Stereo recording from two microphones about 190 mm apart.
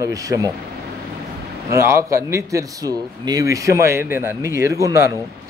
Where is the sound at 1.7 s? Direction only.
15° right (ahead or behind).